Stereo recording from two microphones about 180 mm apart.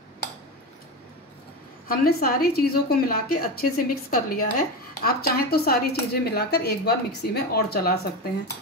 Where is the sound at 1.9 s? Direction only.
55° left (ahead or behind).